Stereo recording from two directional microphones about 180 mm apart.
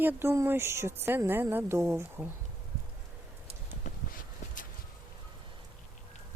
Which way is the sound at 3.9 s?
40° left (ahead or behind).